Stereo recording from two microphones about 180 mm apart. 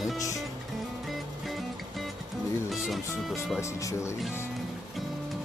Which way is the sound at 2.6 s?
Centre (ahead or behind).